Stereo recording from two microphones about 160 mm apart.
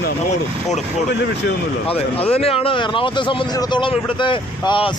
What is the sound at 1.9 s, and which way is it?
A man's voice, 35° left (ahead or behind).